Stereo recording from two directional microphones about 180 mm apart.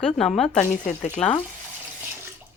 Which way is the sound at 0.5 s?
40° left (ahead or behind).